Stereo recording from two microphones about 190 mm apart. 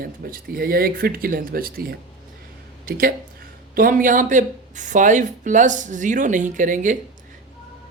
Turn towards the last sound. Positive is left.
turn(degrees=-40)  # may be behind; listen again after turning